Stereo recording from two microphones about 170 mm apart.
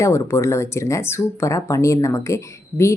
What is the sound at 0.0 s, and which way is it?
Speech, 15° left (ahead or behind).